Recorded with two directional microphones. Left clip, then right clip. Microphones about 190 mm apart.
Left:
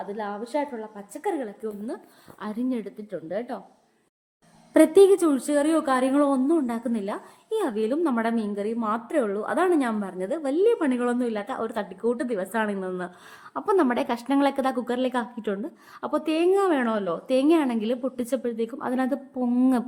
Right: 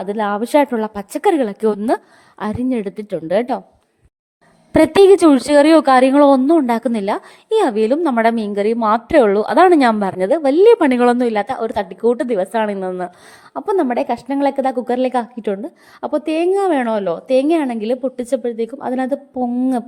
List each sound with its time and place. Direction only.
0.0 s a woman's voice: 55° right (ahead or behind)
2.4 s a woman's voice: 40° right (ahead or behind)
4.7 s a woman's voice: 45° right (ahead or behind)
13.5 s a woman's voice: 20° right (ahead or behind)
19.5 s a sound: 15° right (ahead or behind)